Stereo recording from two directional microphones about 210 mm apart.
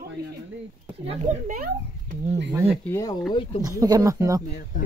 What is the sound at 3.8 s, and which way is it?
Speech, 15° right (ahead or behind).